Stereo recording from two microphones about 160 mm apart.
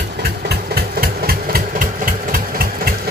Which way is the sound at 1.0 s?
70° right (ahead or behind).